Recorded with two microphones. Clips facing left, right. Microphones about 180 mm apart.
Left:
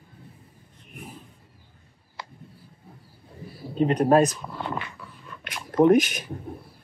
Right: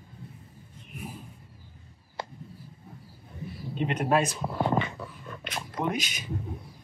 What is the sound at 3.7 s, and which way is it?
Speech, 40° left (ahead or behind).